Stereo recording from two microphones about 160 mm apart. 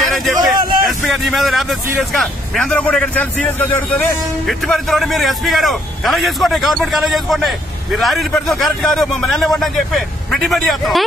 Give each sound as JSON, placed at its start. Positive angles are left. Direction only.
{"t": 0.0, "sound": "a man's voice", "side_deg": 0}